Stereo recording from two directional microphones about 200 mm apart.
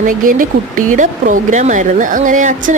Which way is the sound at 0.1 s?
45° right (ahead or behind).